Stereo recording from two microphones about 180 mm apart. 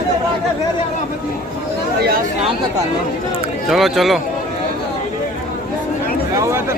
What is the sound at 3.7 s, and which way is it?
Speech, centre (ahead or behind).